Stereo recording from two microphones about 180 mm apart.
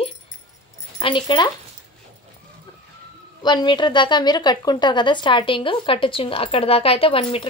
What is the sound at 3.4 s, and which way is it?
A woman's voice, 25° left (ahead or behind).